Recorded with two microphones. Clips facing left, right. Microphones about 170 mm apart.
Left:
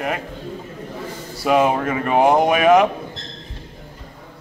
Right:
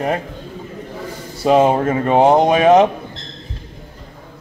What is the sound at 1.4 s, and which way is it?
Speech, 30° right (ahead or behind).